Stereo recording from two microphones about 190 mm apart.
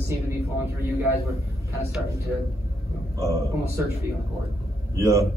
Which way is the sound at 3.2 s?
15° right (ahead or behind).